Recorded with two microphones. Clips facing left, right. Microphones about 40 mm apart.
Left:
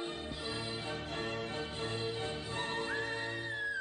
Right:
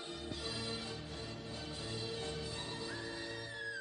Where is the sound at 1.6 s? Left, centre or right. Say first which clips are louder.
Left 6 dB; left.